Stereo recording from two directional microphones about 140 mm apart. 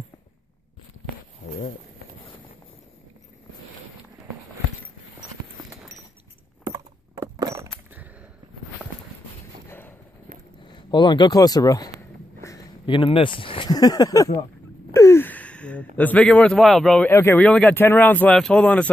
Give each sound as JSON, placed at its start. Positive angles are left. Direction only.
{"t": 6.6, "sound": "keys jangling", "side_deg": -20}
{"t": 9.7, "sound": "a sound", "side_deg": 15}
{"t": 10.6, "sound": "speech", "side_deg": 35}
{"t": 12.8, "sound": "speech", "side_deg": 35}
{"t": 14.9, "sound": "gasp", "side_deg": 20}
{"t": 16.0, "sound": "speech", "side_deg": 10}
{"t": 17.1, "sound": "speech", "side_deg": 15}